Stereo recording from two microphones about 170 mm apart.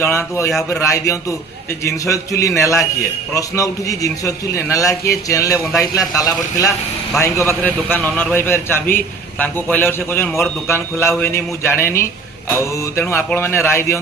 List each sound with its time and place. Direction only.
0.0 s a man's voice: 15° left (ahead or behind)